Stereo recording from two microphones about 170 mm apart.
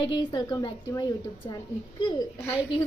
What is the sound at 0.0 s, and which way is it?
A woman's voice, 30° left (ahead or behind).